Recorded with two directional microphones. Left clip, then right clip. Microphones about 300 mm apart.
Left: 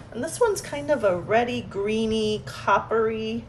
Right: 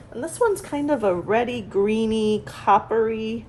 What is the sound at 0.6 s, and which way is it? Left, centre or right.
A woman's voice, centre.